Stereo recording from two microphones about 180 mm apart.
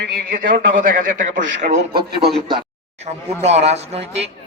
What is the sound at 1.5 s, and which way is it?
Speech, 80° right.